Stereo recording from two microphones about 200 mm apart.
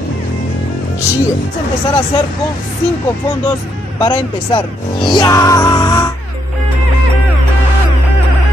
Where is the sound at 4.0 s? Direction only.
20° left (ahead or behind).